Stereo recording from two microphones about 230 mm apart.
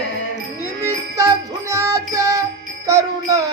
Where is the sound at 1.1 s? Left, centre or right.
Centre.